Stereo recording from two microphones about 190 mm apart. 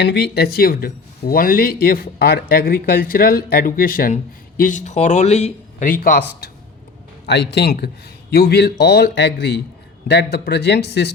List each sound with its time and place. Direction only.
0.0 s a man's voice: 65° left (ahead or behind)